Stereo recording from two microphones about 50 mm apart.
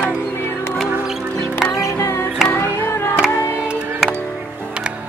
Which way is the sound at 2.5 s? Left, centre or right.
Left.